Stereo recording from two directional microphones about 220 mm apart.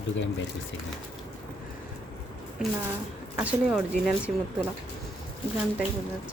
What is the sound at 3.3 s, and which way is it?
Speech, 5° right (ahead or behind).